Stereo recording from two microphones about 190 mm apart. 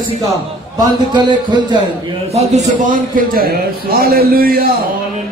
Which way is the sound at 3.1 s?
50° right (ahead or behind).